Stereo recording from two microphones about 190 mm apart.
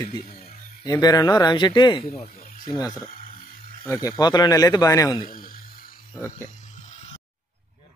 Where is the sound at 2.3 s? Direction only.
45° left (ahead or behind).